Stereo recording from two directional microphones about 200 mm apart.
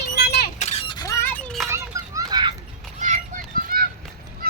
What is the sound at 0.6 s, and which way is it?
Squeal, 30° left (ahead or behind).